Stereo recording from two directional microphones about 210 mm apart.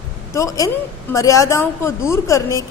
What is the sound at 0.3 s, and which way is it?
A woman's voice, 15° left (ahead or behind).